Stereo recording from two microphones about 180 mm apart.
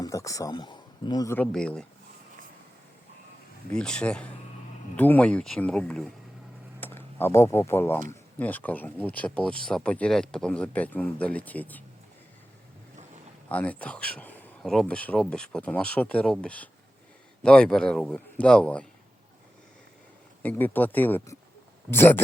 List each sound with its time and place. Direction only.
0.0 s speech: 20° left (ahead or behind)
1.5 s a man's voice: 5° left (ahead or behind)
3.7 s a man's voice: 5° left (ahead or behind)
13.5 s a man's voice: 10° left (ahead or behind)
20.4 s speech: 10° left (ahead or behind)